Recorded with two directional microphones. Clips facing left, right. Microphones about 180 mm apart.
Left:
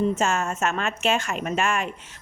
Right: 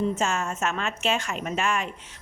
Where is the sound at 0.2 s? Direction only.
45° left (ahead or behind).